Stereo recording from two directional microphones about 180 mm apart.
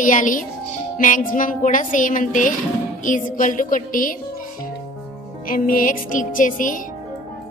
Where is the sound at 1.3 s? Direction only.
45° left (ahead or behind).